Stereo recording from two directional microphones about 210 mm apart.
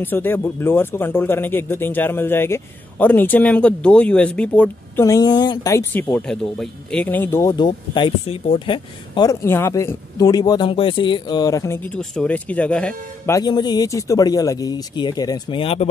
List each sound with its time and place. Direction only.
0.0 s speech: 10° left (ahead or behind)
13.4 s speech: 20° left (ahead or behind)